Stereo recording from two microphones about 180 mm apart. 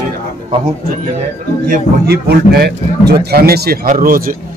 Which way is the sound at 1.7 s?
60° right (ahead or behind).